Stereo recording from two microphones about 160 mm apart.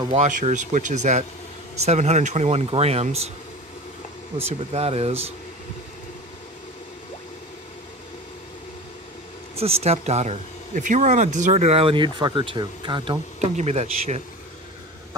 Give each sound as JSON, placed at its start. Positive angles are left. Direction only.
{"t": 0.1, "sound": "speech", "side_deg": -50}
{"t": 4.5, "sound": "speech", "side_deg": -40}
{"t": 9.6, "sound": "speech", "side_deg": -40}
{"t": 13.4, "sound": "speech", "side_deg": -45}